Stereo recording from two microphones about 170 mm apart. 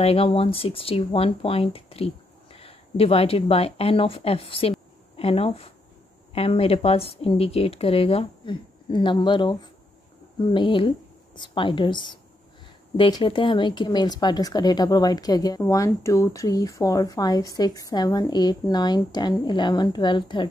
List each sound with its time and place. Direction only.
0.0 s speech: 35° left (ahead or behind)